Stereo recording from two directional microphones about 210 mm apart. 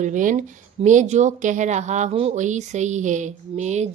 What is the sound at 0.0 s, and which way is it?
A woman's voice, 40° right (ahead or behind).